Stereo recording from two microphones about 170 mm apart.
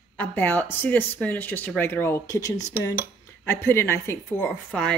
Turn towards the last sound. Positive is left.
turn(degrees=5)  # may be behind; listen again after turning